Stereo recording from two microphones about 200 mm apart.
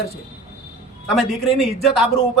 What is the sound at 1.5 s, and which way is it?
Speech, centre (ahead or behind).